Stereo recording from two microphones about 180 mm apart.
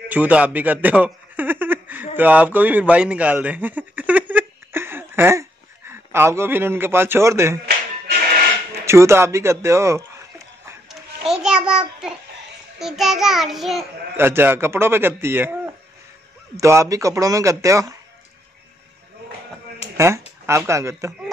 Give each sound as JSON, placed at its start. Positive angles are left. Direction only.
{"t": 0.1, "sound": "a sound", "side_deg": -10}
{"t": 2.1, "sound": "a man's voice", "side_deg": -10}
{"t": 8.8, "sound": "a man's voice", "side_deg": -15}
{"t": 10.9, "sound": "a sound", "side_deg": -5}
{"t": 12.7, "sound": "a child's voice", "side_deg": 0}
{"t": 14.1, "sound": "a man's voice", "side_deg": -10}
{"t": 20.0, "sound": "speech", "side_deg": -15}